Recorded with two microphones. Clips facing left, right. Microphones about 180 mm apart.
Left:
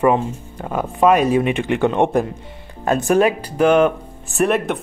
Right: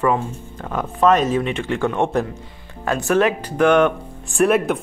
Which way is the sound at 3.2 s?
10° left (ahead or behind).